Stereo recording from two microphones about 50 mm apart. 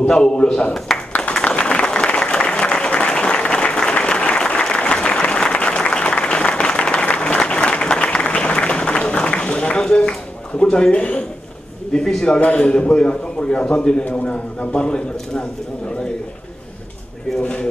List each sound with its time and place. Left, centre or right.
0.1 s a man's voice: centre
0.7 s speech: centre
1.3 s a sound: centre
2.0 s applause: centre
11.9 s a man's voice: centre
12.3 s a man's voice: left
17.4 s a man's voice: centre